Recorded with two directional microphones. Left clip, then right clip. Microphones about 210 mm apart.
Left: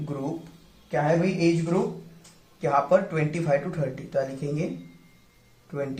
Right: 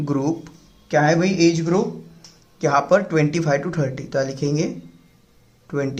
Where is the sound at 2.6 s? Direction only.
40° right (ahead or behind).